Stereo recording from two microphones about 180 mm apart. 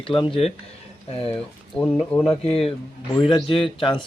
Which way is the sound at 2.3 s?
35° left (ahead or behind).